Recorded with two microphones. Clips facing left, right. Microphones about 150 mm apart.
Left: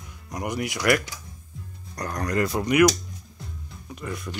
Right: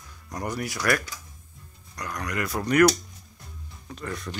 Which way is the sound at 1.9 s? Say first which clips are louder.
Left 5 dB; 40° left (ahead or behind).